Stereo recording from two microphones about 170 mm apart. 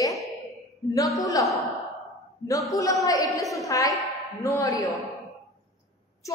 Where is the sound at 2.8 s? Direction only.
20° left (ahead or behind).